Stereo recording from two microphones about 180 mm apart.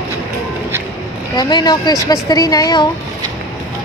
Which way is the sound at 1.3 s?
25° left (ahead or behind).